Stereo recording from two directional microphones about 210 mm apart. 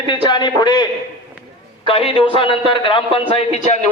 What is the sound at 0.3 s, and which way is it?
A man's voice, 20° left (ahead or behind).